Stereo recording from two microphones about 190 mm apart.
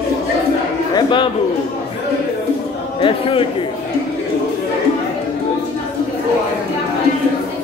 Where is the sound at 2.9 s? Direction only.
25° left (ahead or behind).